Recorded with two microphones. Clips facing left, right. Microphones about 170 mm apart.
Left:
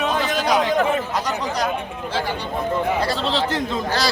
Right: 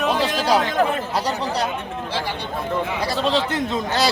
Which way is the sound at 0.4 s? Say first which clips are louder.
Left 1 dB; 30° right (ahead or behind).